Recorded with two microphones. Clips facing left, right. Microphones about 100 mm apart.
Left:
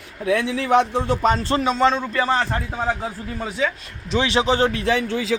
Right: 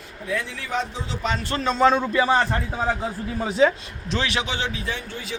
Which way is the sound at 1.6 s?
Centre (ahead or behind).